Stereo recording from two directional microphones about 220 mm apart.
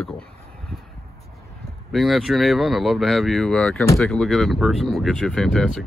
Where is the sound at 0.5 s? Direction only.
Centre (ahead or behind).